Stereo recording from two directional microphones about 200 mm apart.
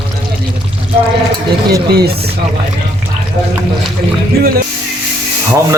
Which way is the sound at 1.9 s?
50° right (ahead or behind).